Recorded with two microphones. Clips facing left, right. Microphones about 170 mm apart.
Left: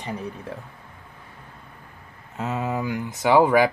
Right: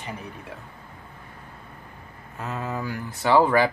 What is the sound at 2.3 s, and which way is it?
Speech, 20° left (ahead or behind).